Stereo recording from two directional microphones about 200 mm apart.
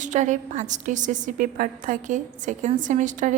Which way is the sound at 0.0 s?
35° right (ahead or behind).